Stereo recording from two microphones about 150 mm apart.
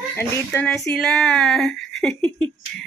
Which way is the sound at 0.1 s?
15° left (ahead or behind).